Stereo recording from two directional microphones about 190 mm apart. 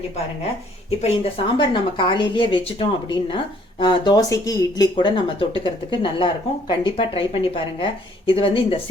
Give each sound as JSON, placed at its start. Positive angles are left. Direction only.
{"t": 0.9, "sound": "a woman's voice", "side_deg": 30}